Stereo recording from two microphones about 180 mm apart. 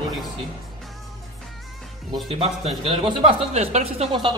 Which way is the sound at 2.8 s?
30° right (ahead or behind).